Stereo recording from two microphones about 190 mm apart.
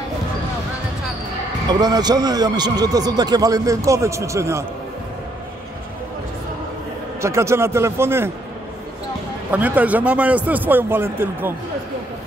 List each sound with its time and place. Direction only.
1.7 s a man's voice: 20° right (ahead or behind)
7.2 s a man's voice: 15° right (ahead or behind)
9.5 s a man's voice: 10° right (ahead or behind)